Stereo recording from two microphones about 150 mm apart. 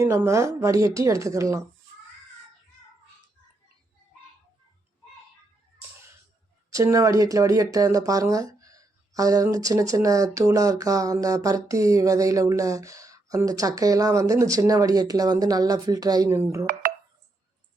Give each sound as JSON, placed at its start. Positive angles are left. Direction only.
{"t": 0.0, "sound": "speech", "side_deg": -20}
{"t": 6.7, "sound": "speech", "side_deg": -20}